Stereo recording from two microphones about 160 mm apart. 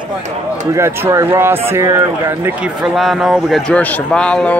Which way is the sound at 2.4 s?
5° right (ahead or behind).